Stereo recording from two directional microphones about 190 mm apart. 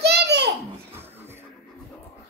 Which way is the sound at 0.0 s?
60° right (ahead or behind).